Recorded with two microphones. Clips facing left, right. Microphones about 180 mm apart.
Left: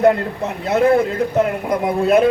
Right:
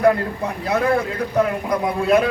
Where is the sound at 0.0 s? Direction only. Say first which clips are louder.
Left 2 dB; 25° left (ahead or behind).